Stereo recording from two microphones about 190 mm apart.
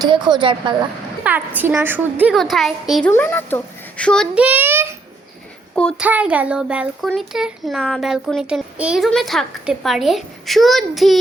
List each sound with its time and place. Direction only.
0.0 s a woman's voice: 25° right (ahead or behind)
1.2 s a woman's voice: 10° right (ahead or behind)
4.4 s child singing: 10° right (ahead or behind)
6.0 s a woman's voice: 5° right (ahead or behind)